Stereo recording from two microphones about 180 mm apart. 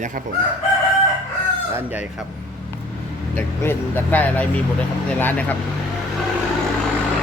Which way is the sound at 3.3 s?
10° left (ahead or behind).